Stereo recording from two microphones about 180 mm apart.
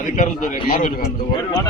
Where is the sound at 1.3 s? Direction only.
20° left (ahead or behind).